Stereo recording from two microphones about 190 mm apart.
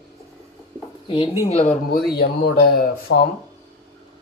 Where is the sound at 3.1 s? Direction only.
90° left.